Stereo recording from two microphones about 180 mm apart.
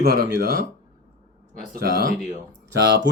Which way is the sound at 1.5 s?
55° right (ahead or behind).